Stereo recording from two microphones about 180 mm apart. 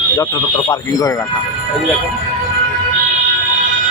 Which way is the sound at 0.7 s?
20° left (ahead or behind).